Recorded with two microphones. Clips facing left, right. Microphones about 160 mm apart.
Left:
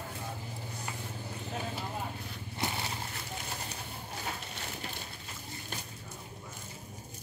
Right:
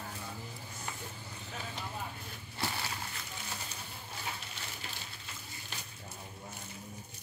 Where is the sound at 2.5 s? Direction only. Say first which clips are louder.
Left 2 dB; 20° left (ahead or behind).